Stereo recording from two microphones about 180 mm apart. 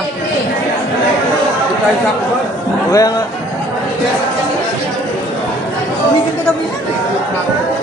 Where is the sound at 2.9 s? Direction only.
20° left (ahead or behind).